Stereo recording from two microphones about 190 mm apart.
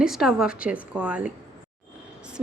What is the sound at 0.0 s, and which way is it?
A woman's voice, centre (ahead or behind).